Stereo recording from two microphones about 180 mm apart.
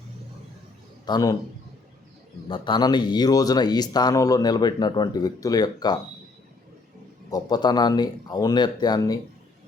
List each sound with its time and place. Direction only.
1.0 s speech: 20° left (ahead or behind)
2.5 s speech: 25° left (ahead or behind)
7.3 s speech: 20° left (ahead or behind)